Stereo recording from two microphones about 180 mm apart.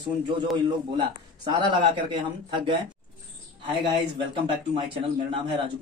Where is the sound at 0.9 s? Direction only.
25° right (ahead or behind).